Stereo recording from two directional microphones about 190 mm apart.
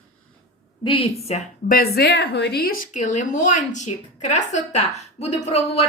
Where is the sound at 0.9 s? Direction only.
30° left (ahead or behind).